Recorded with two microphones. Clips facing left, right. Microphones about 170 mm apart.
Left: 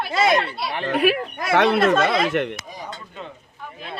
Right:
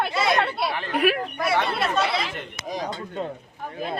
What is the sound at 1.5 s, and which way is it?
Speech, 70° left (ahead or behind).